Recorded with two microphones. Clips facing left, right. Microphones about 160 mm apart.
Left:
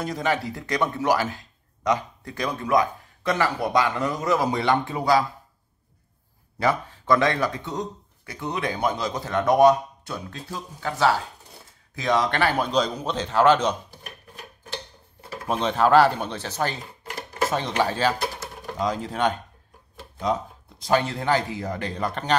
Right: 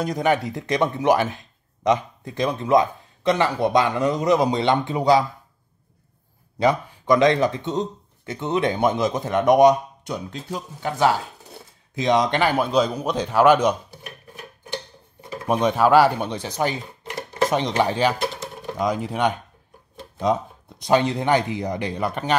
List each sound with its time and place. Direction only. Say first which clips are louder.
0.0 s speech: right 4 dB; 20° right (ahead or behind)
6.6 s a man's voice: right 4 dB; 20° right (ahead or behind)
15.2 s speech: right 5 dB; 15° right (ahead or behind)
20.8 s speech: right 3 dB; 20° right (ahead or behind)